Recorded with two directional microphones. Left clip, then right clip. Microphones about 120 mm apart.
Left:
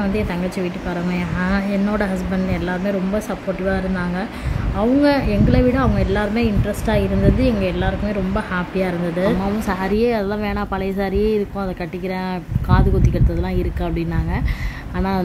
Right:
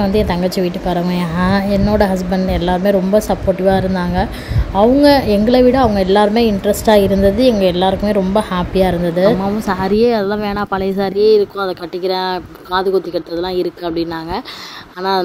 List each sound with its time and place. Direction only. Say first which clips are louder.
0.0 s speech: right 7 dB; 30° right (ahead or behind)